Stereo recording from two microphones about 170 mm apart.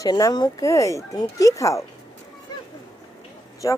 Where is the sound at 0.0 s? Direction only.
20° left (ahead or behind).